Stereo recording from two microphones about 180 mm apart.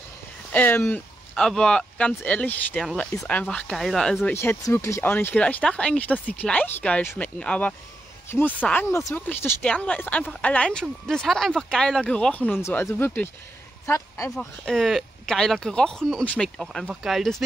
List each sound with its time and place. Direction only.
0.5 s speech: 10° left (ahead or behind)
14.3 s speech: centre (ahead or behind)